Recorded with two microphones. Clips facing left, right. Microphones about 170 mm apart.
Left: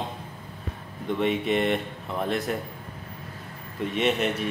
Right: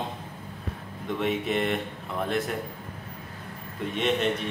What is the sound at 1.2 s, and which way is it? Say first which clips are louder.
A man's voice: left 2 dB; centre (ahead or behind).